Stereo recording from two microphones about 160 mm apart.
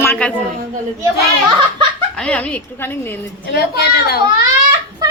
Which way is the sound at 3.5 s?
90° left.